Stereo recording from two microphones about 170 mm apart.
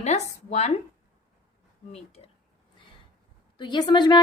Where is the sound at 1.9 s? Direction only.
40° left (ahead or behind).